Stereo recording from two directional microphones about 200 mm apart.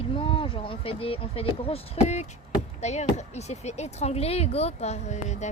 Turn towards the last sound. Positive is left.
turn(degrees=35)  # may be behind; listen again after turning